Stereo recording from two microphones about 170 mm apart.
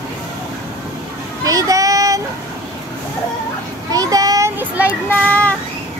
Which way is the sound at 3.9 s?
20° right (ahead or behind).